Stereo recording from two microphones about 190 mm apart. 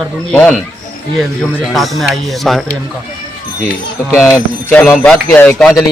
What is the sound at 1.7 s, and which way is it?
Speech, centre (ahead or behind).